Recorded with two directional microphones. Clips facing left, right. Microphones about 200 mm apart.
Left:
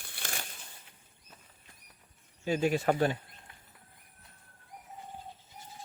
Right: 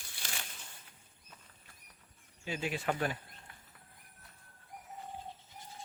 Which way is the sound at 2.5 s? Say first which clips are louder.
Left 8 dB; 45° left (ahead or behind).